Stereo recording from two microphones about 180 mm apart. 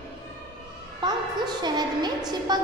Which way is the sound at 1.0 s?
25° right (ahead or behind).